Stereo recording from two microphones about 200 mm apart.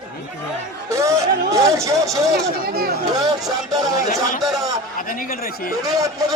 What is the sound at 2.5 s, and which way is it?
Speech, 50° right (ahead or behind).